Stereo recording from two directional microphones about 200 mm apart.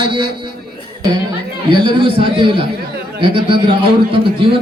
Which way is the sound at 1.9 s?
25° right (ahead or behind).